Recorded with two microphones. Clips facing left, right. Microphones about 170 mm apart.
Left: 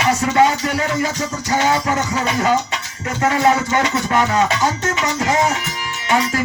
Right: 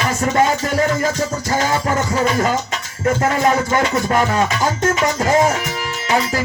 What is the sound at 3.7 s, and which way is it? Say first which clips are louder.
Music: right 1 dB; 40° right (ahead or behind).